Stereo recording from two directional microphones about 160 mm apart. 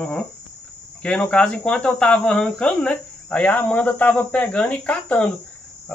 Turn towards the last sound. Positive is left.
turn(degrees=5)  # may be behind; listen again after turning